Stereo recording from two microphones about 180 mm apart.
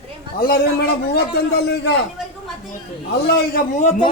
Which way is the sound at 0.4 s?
55° left (ahead or behind).